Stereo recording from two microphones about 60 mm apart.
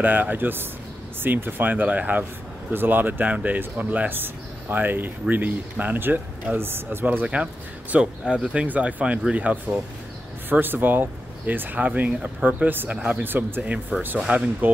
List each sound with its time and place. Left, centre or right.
0.0 s speech: right
2.7 s speech: right
7.9 s speech: centre; by 13.5 s right
13.6 s speech: right